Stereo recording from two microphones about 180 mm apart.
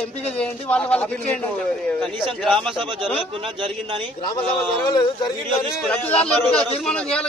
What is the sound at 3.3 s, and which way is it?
Speech, 30° right (ahead or behind).